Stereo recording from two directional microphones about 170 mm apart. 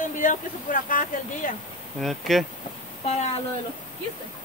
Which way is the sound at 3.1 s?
40° left (ahead or behind).